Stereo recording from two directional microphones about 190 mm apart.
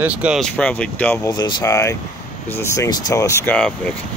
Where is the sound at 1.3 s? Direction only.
20° left (ahead or behind).